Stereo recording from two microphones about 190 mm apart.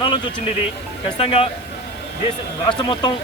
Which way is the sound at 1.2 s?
30° left (ahead or behind).